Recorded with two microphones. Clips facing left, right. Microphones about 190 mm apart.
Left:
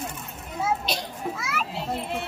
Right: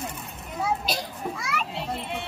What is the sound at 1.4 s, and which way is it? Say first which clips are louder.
Children playing: even; centre (ahead or behind).